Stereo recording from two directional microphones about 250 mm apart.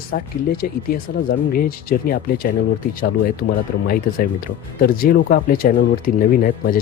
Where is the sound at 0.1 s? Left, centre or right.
Left.